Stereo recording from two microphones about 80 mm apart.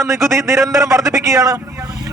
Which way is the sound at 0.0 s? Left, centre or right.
Right.